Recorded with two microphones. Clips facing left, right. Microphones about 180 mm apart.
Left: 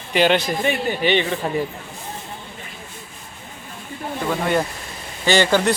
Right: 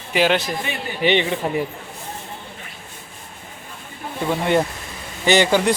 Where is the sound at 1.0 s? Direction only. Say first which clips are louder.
Right 3 dB; 20° right (ahead or behind).